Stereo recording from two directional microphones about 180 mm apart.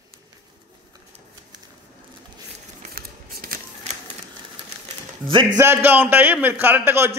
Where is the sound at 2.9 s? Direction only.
55° right (ahead or behind).